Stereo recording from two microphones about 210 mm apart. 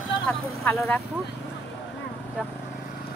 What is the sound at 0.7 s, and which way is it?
Speech, 10° left (ahead or behind).